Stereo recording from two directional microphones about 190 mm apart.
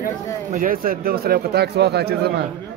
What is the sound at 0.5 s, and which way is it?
Speech, 50° right (ahead or behind).